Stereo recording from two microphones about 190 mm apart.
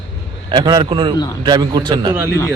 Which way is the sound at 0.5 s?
20° right (ahead or behind).